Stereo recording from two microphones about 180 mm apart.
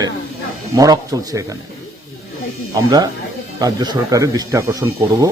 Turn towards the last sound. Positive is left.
turn(degrees=-20)  # may be behind; listen again after turning